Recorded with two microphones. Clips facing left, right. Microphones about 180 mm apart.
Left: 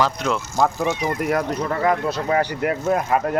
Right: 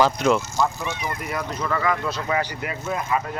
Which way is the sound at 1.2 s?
55° left (ahead or behind).